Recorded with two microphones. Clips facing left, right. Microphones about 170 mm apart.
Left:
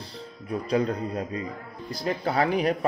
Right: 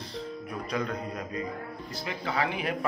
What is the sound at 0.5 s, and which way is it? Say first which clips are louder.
Speech: left 8 dB; 35° left (ahead or behind).